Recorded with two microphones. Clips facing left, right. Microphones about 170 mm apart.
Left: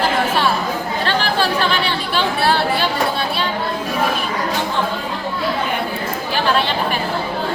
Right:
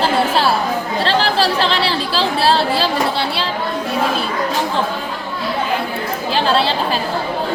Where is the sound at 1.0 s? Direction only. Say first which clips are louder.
Right 3 dB; 30° right (ahead or behind).